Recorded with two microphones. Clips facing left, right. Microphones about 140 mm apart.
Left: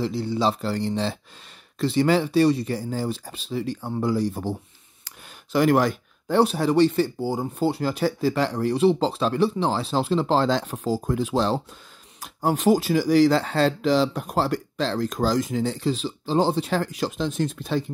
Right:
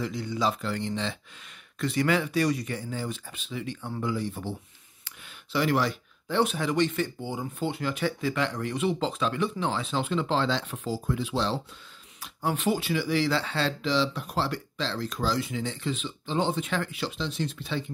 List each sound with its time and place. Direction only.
0.0 s speech: 30° left (ahead or behind)